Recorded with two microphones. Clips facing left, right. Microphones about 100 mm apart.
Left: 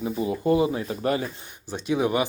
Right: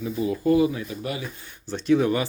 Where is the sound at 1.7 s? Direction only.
15° left (ahead or behind).